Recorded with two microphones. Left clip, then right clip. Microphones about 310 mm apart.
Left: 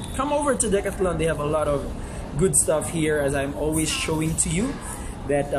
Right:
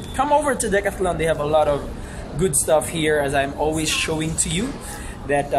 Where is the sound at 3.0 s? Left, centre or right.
Centre.